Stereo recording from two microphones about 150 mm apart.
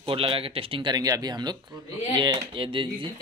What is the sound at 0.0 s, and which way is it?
Speech, 35° right (ahead or behind).